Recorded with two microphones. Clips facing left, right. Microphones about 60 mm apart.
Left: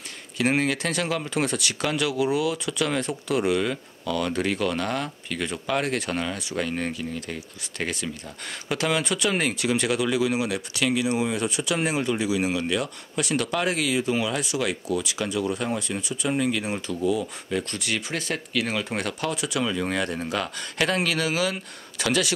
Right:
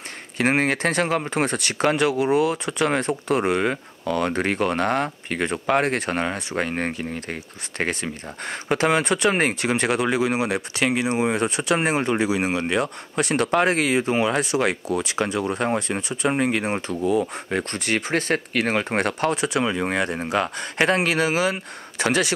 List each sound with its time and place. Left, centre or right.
0.4 s speech: right